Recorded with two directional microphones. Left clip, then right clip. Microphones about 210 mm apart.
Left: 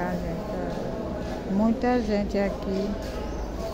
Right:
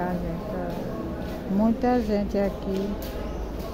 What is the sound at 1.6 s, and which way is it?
Speech, 10° right (ahead or behind).